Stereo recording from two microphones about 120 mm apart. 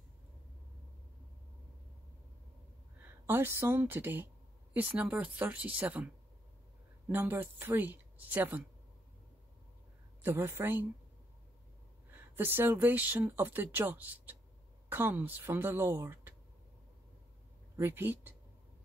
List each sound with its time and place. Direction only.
3.0 s speech: 15° right (ahead or behind)
7.1 s speech: 15° right (ahead or behind)
10.2 s speech: 20° right (ahead or behind)
12.1 s speech: 15° right (ahead or behind)
17.7 s speech: 20° right (ahead or behind)